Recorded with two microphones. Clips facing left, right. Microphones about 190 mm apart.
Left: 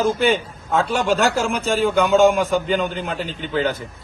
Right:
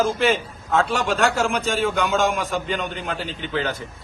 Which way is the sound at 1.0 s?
35° left (ahead or behind).